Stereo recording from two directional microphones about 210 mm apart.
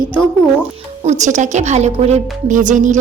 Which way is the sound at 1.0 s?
35° right (ahead or behind).